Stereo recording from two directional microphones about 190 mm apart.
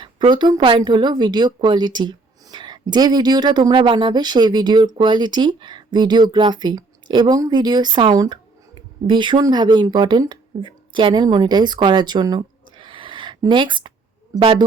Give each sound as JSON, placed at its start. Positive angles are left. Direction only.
{"t": 0.0, "sound": "a woman's voice", "side_deg": -25}